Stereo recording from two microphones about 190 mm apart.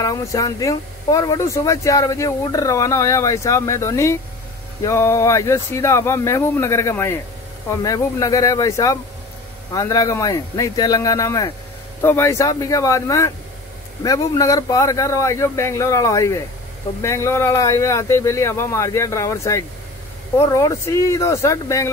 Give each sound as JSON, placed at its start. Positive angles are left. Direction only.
{"t": 0.0, "sound": "a man's voice", "side_deg": 20}